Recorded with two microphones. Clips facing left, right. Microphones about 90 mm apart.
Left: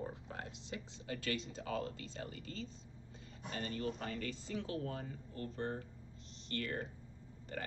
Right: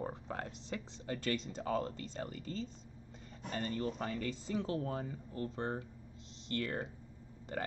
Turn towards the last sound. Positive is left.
turn(degrees=-30)  # may be behind; listen again after turning